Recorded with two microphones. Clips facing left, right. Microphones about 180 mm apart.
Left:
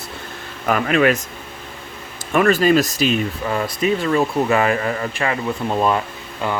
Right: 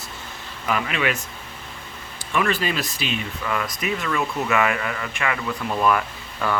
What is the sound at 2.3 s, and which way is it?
Speech, 45° left (ahead or behind).